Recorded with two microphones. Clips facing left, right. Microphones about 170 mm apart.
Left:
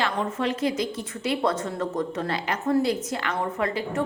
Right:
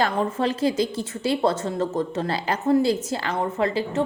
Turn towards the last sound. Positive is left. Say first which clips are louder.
# right 3 dB
turn(degrees=-30)  # may be behind; listen again after turning